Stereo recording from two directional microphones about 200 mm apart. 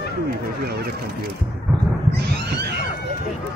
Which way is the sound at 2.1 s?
55° right (ahead or behind).